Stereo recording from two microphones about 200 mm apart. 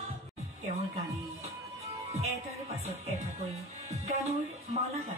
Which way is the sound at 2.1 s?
30° right (ahead or behind).